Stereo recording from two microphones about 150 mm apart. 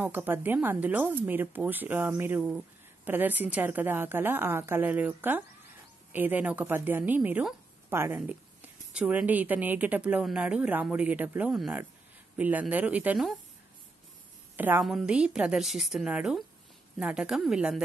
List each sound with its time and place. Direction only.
0.0 s a woman's voice: 15° right (ahead or behind)
14.8 s a woman's voice: centre (ahead or behind)